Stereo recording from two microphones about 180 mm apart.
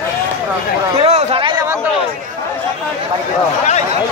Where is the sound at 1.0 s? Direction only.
35° right (ahead or behind).